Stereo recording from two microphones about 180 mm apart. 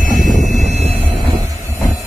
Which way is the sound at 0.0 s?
45° right (ahead or behind).